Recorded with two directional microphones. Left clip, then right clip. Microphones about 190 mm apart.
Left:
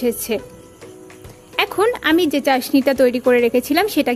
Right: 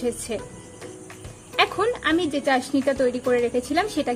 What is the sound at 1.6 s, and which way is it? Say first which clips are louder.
A woman's voice: left 4 dB; 45° left (ahead or behind).